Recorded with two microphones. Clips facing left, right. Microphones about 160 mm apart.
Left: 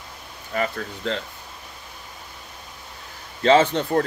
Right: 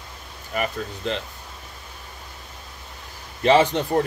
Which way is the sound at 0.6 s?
20° right (ahead or behind).